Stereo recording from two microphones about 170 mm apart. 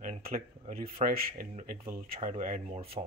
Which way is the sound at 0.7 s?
60° right (ahead or behind).